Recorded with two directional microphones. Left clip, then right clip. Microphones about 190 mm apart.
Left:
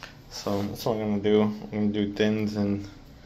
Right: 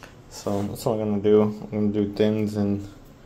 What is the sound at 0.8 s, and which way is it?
Speech, 30° right (ahead or behind).